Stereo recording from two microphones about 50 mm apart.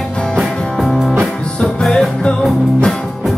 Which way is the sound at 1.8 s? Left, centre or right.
Centre.